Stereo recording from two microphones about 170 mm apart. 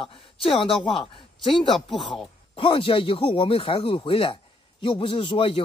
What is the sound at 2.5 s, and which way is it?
Speech, 30° left (ahead or behind).